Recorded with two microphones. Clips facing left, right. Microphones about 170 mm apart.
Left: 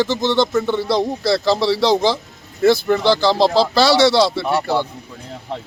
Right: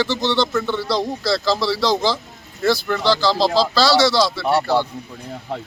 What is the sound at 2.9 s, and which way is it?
Speech, 20° left (ahead or behind).